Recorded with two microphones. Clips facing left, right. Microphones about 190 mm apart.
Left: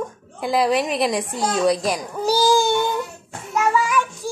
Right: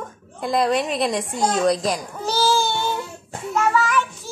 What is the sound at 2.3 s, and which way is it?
Baby cry, 15° left (ahead or behind).